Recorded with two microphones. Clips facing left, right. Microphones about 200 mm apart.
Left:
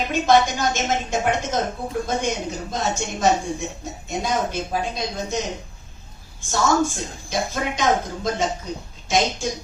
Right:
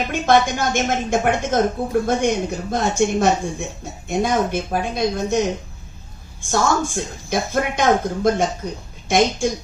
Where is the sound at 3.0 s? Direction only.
60° right (ahead or behind).